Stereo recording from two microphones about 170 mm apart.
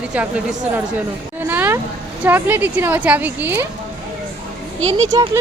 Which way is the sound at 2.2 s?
10° right (ahead or behind).